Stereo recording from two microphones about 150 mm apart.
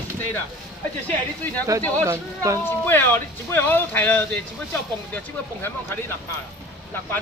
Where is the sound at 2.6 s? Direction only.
15° left (ahead or behind).